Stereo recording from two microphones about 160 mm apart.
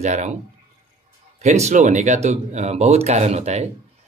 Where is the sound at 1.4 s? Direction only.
45° right (ahead or behind).